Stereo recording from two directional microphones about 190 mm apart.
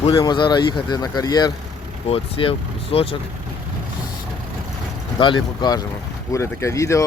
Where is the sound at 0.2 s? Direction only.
25° left (ahead or behind).